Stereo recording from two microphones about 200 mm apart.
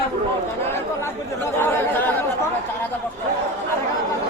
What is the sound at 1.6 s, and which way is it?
Speech, 10° left (ahead or behind).